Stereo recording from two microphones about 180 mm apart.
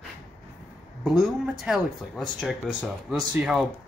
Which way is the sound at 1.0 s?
Centre (ahead or behind).